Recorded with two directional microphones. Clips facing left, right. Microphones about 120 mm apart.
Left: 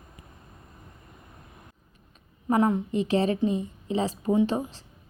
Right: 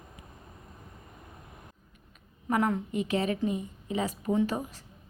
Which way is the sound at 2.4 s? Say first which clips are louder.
Left 4 dB; 20° left (ahead or behind).